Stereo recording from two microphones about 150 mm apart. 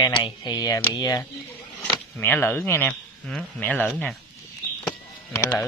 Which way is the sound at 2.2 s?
15° left (ahead or behind).